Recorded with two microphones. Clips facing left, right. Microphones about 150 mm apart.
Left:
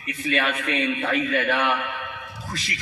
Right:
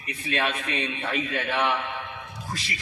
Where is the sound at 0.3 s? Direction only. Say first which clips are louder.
Left 3 dB; 30° right (ahead or behind).